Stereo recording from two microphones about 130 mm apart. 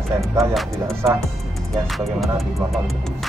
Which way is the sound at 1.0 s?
20° right (ahead or behind).